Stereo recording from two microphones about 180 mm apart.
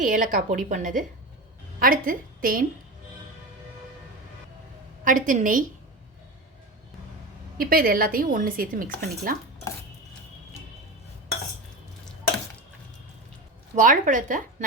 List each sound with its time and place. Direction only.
0.0 s a woman's voice: 45° right (ahead or behind)
5.0 s a woman's voice: 45° right (ahead or behind)
7.6 s a woman's voice: 55° right (ahead or behind)
13.7 s a woman's voice: 45° right (ahead or behind)